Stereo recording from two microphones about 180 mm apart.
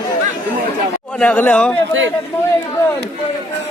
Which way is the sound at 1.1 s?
10° left (ahead or behind).